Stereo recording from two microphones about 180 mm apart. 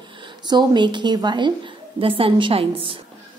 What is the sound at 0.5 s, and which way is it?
A woman's voice, 25° right (ahead or behind).